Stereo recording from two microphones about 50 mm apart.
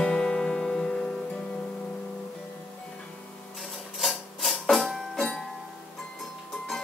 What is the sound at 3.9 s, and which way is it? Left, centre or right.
Music, centre.